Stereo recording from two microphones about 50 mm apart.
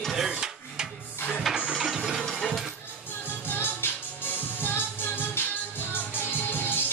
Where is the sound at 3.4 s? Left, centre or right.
Left.